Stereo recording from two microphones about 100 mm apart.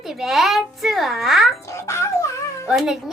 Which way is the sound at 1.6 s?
30° left (ahead or behind).